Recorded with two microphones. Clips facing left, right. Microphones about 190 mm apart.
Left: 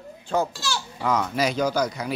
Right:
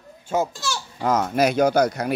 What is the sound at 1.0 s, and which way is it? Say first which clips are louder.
Speech: right 4 dB; 45° right (ahead or behind).